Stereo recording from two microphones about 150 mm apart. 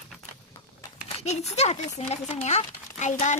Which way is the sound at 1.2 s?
45° left (ahead or behind).